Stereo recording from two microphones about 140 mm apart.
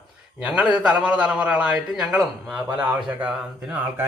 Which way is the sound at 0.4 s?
5° right (ahead or behind).